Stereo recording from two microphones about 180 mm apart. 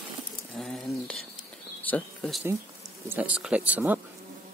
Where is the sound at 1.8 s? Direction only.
10° left (ahead or behind).